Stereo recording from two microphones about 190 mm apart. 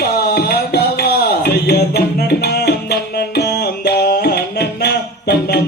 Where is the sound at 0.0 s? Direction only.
55° left (ahead or behind).